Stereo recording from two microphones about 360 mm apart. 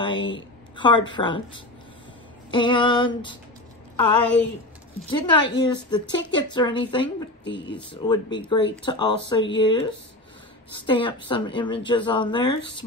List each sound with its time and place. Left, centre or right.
0.0 s a woman's voice: centre
7.4 s speech: left
7.7 s a woman's voice: centre